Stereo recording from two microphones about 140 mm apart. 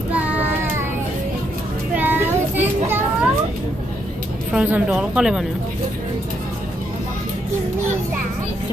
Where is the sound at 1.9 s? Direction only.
15° right (ahead or behind).